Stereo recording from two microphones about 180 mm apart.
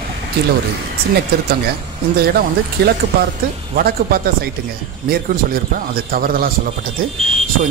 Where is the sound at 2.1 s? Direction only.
60° right (ahead or behind).